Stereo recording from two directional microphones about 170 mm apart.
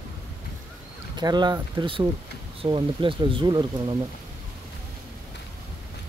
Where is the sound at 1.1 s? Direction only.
25° right (ahead or behind).